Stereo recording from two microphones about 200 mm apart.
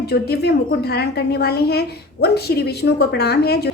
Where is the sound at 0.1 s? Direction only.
55° left (ahead or behind).